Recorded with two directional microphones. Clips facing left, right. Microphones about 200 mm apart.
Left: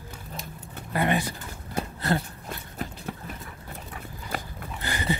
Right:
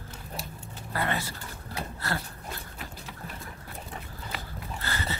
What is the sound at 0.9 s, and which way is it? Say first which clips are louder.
Speech: left 6 dB; 15° left (ahead or behind).